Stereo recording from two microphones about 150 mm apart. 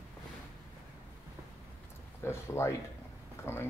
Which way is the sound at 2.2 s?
15° left (ahead or behind).